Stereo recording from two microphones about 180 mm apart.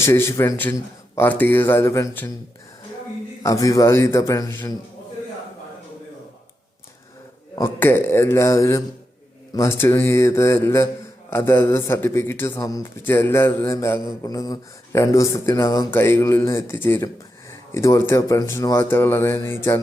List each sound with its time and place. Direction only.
0.0 s a man's voice: 15° left (ahead or behind)
3.4 s a man's voice: 20° left (ahead or behind)
7.5 s a man's voice: 15° left (ahead or behind)